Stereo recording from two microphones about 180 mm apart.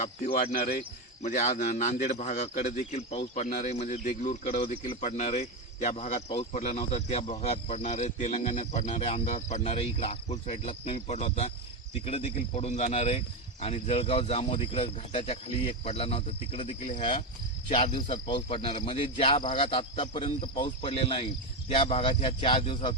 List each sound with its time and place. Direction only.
0.0 s speech: 55° left (ahead or behind)
1.2 s speech: 40° left (ahead or behind)